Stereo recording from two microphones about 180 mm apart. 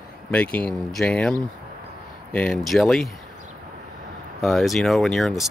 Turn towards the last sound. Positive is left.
turn(degrees=0)  # may be behind; listen again after turning